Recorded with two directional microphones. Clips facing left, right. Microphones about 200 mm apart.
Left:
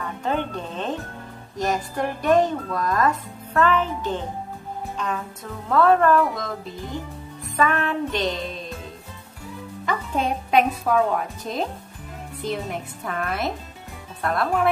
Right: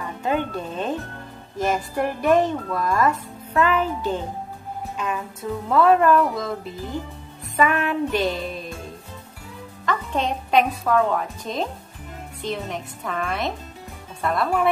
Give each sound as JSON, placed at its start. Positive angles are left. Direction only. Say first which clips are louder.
{"t": 0.2, "sound": "music", "louder": "right 2 dB", "side_deg": -10}
{"t": 1.6, "sound": "a woman's voice", "louder": "right 2 dB", "side_deg": -5}
{"t": 4.9, "sound": "music", "louder": "right 1 dB", "side_deg": -10}
{"t": 5.7, "sound": "a woman's voice", "louder": "right 1 dB", "side_deg": -10}
{"t": 7.5, "sound": "a woman's voice", "louder": "right 1 dB", "side_deg": -10}
{"t": 9.8, "sound": "a woman's voice", "louder": "even", "side_deg": 5}